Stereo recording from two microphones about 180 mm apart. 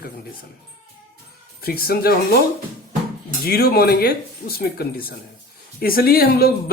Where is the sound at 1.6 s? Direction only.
55° left (ahead or behind).